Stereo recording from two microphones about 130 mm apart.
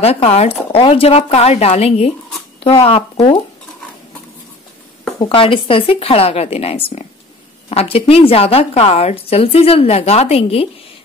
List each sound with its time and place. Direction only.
0.0 s a woman's voice: 55° left (ahead or behind)
5.2 s a woman's voice: 40° left (ahead or behind)